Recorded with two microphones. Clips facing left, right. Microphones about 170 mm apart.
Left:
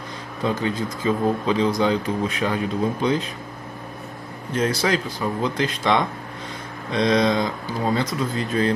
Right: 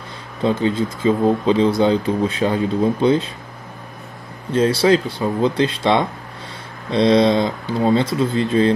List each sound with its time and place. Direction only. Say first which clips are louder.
0.4 s speech: right 5 dB; 30° right (ahead or behind)
4.5 s speech: right 7 dB; 30° right (ahead or behind)